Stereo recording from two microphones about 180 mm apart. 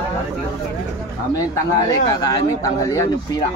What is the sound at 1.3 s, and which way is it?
Speech, 20° left (ahead or behind).